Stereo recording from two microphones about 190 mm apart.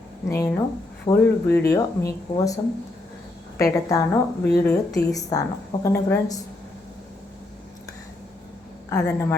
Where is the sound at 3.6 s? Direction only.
20° left (ahead or behind).